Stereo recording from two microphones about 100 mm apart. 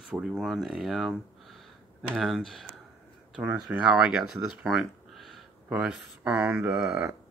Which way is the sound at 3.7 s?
10° right (ahead or behind).